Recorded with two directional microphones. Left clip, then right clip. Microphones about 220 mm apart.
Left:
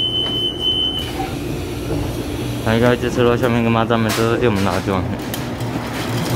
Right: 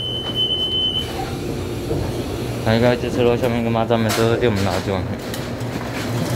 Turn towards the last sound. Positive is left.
turn(degrees=5)  # may be behind; listen again after turning